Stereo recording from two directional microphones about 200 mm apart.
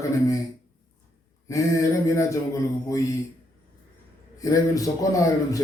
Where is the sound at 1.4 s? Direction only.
15° left (ahead or behind).